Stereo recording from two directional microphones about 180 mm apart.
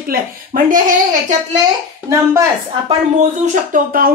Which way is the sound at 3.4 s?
45° right (ahead or behind).